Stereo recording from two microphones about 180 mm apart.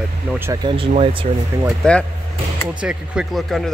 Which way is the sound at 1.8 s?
5° left (ahead or behind).